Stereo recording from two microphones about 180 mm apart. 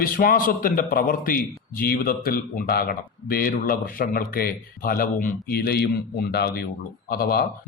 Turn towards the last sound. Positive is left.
turn(degrees=55)  # may be behind; listen again after turning